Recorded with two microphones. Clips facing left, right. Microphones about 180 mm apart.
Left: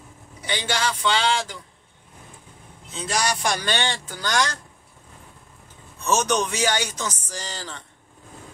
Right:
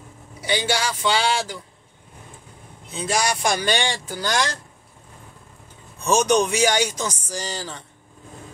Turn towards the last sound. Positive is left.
turn(degrees=-10)  # may be behind; listen again after turning